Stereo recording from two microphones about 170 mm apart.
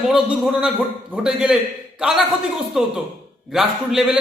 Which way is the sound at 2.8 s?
5° right (ahead or behind).